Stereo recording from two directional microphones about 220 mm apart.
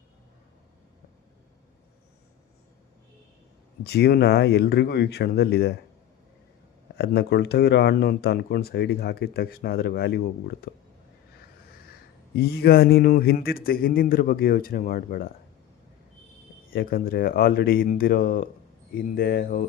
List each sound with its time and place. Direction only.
3.8 s speech: 45° left (ahead or behind)
6.9 s speech: 45° left (ahead or behind)
12.4 s a man's voice: 45° left (ahead or behind)
16.6 s a man's voice: 45° left (ahead or behind)